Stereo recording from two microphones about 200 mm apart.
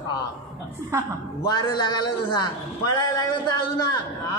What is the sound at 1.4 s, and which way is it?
A man's voice, 20° left (ahead or behind).